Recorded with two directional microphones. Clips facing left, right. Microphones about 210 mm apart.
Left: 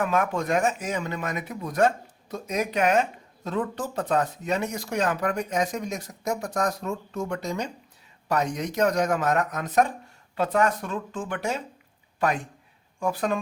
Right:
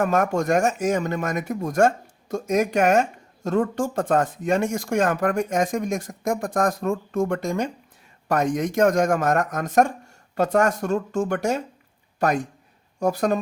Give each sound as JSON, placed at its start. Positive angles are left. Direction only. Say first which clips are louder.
{"t": 0.0, "sound": "speech", "louder": "right 4 dB", "side_deg": -45}